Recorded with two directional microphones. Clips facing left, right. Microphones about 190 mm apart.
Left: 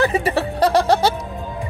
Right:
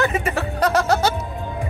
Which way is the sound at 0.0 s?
30° left (ahead or behind).